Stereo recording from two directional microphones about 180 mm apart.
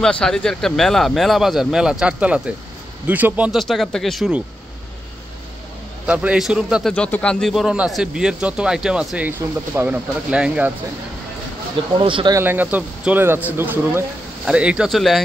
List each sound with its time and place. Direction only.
0.0 s speech: 5° left (ahead or behind)
6.0 s speech: 5° right (ahead or behind)
6.9 s a man's voice: 5° left (ahead or behind)
12.0 s speech: 30° right (ahead or behind)
12.4 s a man's voice: 10° right (ahead or behind)